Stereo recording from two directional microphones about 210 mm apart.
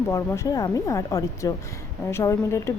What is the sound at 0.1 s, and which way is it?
A woman's voice, 15° left (ahead or behind).